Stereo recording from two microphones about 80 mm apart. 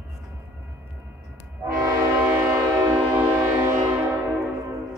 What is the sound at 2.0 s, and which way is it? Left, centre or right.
Train, right.